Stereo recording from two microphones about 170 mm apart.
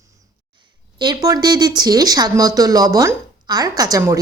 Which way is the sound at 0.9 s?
25° right (ahead or behind).